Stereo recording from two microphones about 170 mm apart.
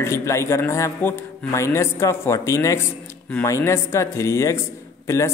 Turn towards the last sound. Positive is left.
turn(degrees=15)  # may be behind; listen again after turning